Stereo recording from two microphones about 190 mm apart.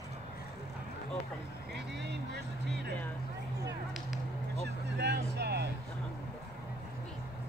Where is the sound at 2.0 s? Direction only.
60° right (ahead or behind).